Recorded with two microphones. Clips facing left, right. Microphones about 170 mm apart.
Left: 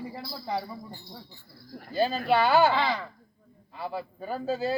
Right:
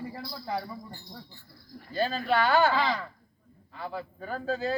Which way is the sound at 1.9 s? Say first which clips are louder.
Left 3 dB; 5° left (ahead or behind).